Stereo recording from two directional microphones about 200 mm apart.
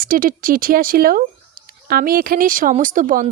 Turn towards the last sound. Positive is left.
turn(degrees=-40)  # may be behind; listen again after turning